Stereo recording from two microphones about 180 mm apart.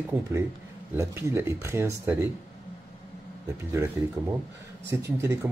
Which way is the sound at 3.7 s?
15° right (ahead or behind).